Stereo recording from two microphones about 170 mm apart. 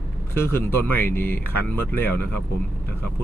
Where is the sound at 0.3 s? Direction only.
15° left (ahead or behind).